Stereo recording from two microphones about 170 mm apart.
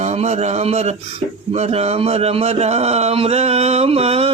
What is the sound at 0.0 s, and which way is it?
Speech, 40° right (ahead or behind).